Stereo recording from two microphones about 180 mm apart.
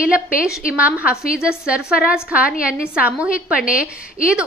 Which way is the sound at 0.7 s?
5° right (ahead or behind).